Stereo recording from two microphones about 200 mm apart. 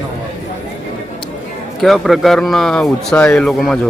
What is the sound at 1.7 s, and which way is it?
Speech, centre (ahead or behind).